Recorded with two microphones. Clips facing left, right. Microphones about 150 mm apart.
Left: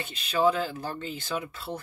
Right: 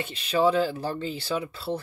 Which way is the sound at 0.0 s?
30° right (ahead or behind).